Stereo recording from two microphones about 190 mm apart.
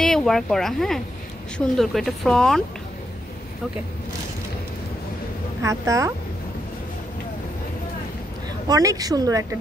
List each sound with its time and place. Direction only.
0.0 s speech: 5° left (ahead or behind)
5.6 s a woman's voice: 15° right (ahead or behind)
8.6 s speech: 20° right (ahead or behind)